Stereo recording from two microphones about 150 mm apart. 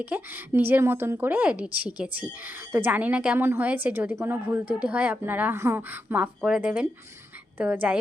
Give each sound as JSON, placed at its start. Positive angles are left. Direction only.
{"t": 0.0, "sound": "a woman's voice", "side_deg": -15}